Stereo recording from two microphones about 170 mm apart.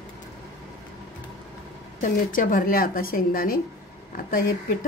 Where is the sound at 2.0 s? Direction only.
55° left (ahead or behind).